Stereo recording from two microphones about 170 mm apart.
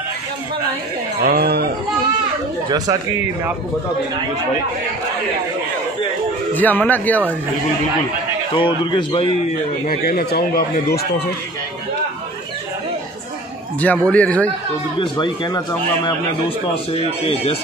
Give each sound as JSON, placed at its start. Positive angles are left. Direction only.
{"t": 1.2, "sound": "speech", "side_deg": -65}
{"t": 6.5, "sound": "speech", "side_deg": 10}
{"t": 8.5, "sound": "speech", "side_deg": 30}
{"t": 9.8, "sound": "speech", "side_deg": 65}
{"t": 13.7, "sound": "speech", "side_deg": 10}
{"t": 15.0, "sound": "speech", "side_deg": 30}